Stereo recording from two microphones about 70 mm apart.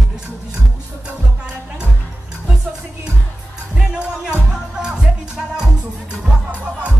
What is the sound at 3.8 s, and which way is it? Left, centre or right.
Music, centre.